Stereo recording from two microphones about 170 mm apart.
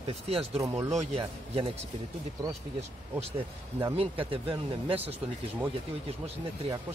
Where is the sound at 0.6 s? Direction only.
20° right (ahead or behind).